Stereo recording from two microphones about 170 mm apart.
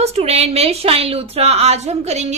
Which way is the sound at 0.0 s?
40° right (ahead or behind).